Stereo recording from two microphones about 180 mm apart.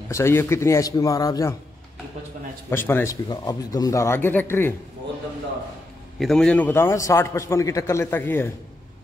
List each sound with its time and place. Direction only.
0.1 s a man's voice: 15° left (ahead or behind)
2.7 s a man's voice: 15° left (ahead or behind)
6.1 s a man's voice: centre (ahead or behind)